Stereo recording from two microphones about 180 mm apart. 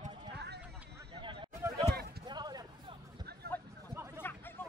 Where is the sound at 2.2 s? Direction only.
25° right (ahead or behind).